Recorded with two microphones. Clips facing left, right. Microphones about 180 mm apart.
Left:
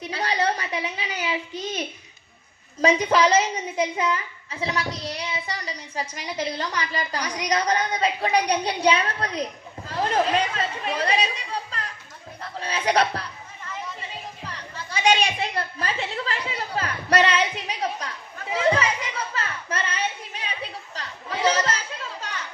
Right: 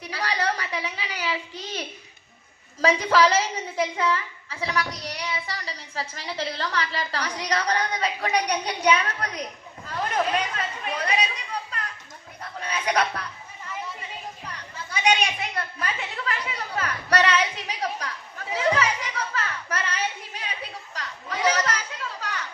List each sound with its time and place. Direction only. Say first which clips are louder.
0.0 s a child's voice: left 3 dB; 25° left (ahead or behind)
12.5 s music: left 3 dB; 30° left (ahead or behind)
15.0 s a sound: left 2 dB; 30° left (ahead or behind)
18.5 s children playing: left 2 dB; 25° left (ahead or behind)